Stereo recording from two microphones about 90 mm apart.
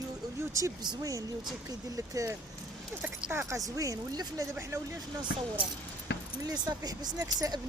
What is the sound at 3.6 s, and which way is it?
Speech, 40° right (ahead or behind).